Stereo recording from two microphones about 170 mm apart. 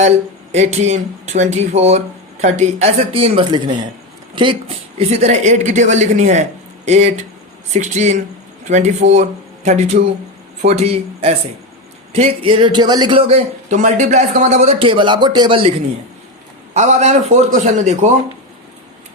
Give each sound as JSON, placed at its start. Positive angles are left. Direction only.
{"t": 0.5, "sound": "a man's voice", "side_deg": -40}
{"t": 4.9, "sound": "a man's voice", "side_deg": -40}
{"t": 16.7, "sound": "speech", "side_deg": -45}